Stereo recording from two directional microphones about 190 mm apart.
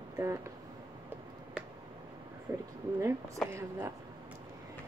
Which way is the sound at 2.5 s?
20° right (ahead or behind).